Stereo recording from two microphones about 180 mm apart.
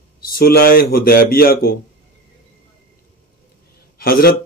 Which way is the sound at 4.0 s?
55° left (ahead or behind).